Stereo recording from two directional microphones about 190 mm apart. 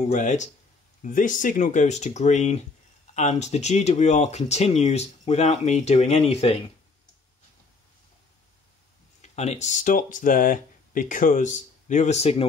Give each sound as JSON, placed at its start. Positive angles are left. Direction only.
{"t": 0.1, "sound": "speech", "side_deg": 40}
{"t": 9.2, "sound": "speech", "side_deg": 35}